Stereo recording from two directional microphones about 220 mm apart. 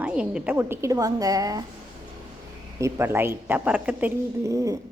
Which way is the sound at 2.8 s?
10° right (ahead or behind).